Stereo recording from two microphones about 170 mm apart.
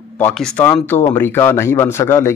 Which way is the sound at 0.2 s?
10° left (ahead or behind).